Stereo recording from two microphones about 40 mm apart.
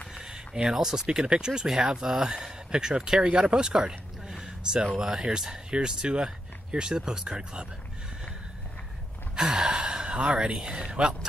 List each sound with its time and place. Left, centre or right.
0.1 s a sound: centre
0.7 s speech: centre
9.3 s speech: right